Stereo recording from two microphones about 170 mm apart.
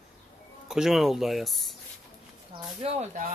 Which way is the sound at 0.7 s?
Centre (ahead or behind).